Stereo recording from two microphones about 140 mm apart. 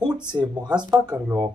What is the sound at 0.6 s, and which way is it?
Speech, 5° right (ahead or behind).